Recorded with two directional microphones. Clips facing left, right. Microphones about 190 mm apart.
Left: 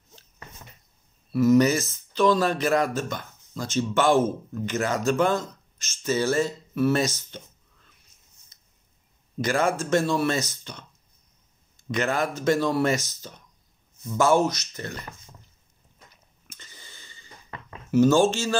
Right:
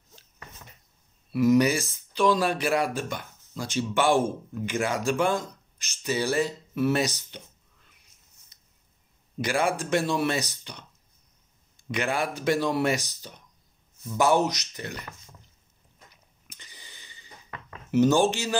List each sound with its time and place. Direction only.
1.3 s speech: 15° right (ahead or behind)
8.5 s a sound: 15° right (ahead or behind)
9.4 s speech: 15° right (ahead or behind)
11.9 s speech: 10° right (ahead or behind)
16.4 s wheeze: 15° right (ahead or behind)
17.9 s speech: 15° right (ahead or behind)